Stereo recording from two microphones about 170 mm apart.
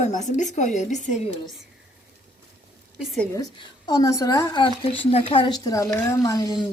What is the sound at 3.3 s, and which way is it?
Speech, 25° left (ahead or behind).